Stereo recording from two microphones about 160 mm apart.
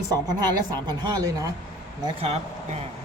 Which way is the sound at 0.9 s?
25° right (ahead or behind).